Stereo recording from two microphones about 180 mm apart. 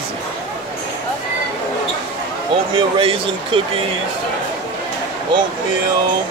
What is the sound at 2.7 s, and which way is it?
Speech, 30° right (ahead or behind).